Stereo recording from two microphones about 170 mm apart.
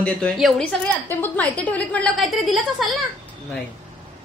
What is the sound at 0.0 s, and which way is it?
A woman's voice, 5° left (ahead or behind).